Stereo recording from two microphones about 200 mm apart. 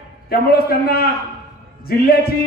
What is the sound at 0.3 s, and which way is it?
A man's voice, 50° left (ahead or behind).